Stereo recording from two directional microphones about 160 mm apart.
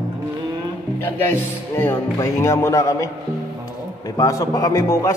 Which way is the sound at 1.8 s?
15° left (ahead or behind).